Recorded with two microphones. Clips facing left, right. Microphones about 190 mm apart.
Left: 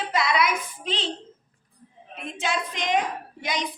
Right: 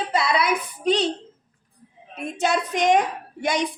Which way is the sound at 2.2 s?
40° right (ahead or behind).